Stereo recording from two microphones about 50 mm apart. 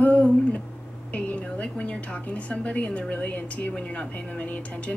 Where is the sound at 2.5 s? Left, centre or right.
Left.